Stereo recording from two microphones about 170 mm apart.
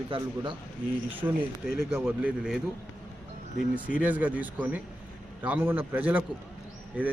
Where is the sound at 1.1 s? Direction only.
10° right (ahead or behind).